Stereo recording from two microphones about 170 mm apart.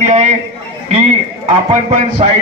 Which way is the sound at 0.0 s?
40° right (ahead or behind).